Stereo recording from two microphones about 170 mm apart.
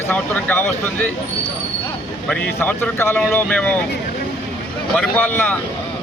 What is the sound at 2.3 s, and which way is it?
A man's voice, 10° left (ahead or behind).